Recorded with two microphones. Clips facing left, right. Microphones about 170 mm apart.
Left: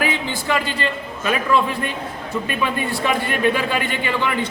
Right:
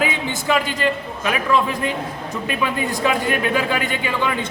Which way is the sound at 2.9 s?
15° right (ahead or behind).